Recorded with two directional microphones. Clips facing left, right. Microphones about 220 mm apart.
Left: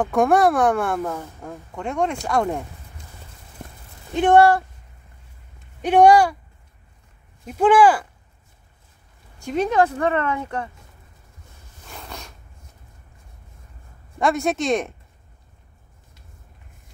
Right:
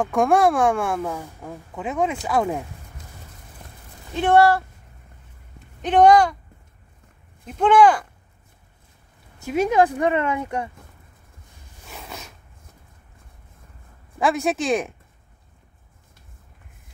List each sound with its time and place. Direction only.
0.0 s a woman's voice: centre (ahead or behind)
4.1 s speech: 15° left (ahead or behind)
5.8 s speech: 10° left (ahead or behind)
7.4 s speech: 5° left (ahead or behind)
9.4 s speech: 10° right (ahead or behind)
11.9 s a sound: 5° right (ahead or behind)
14.1 s a woman's voice: centre (ahead or behind)